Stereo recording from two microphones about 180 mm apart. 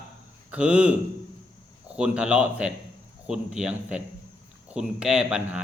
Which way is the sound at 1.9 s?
5° right (ahead or behind).